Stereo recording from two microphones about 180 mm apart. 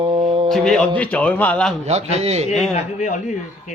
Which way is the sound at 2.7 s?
40° left (ahead or behind).